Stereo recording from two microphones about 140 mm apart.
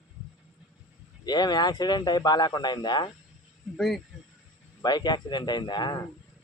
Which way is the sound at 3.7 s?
Centre (ahead or behind).